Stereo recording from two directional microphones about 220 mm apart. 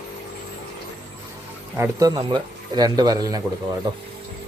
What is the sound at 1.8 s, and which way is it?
A man's voice, 15° right (ahead or behind).